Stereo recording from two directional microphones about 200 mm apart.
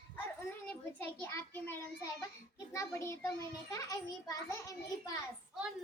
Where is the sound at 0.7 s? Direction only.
10° left (ahead or behind).